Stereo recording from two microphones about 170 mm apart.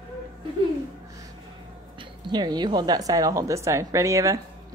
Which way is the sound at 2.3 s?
25° right (ahead or behind).